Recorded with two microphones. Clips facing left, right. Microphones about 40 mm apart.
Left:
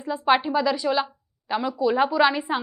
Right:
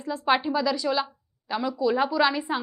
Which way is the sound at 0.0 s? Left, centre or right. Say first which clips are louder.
Left 3 dB; centre.